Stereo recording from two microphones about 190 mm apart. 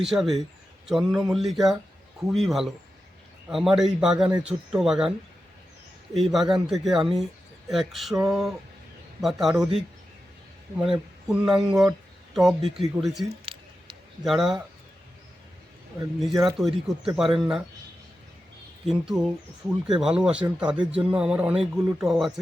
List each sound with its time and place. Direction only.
0.0 s a man's voice: centre (ahead or behind)
6.3 s a man's voice: centre (ahead or behind)
13.2 s squish: 30° right (ahead or behind)
14.3 s a man's voice: centre (ahead or behind)
16.2 s a man's voice: centre (ahead or behind)
18.9 s a man's voice: centre (ahead or behind)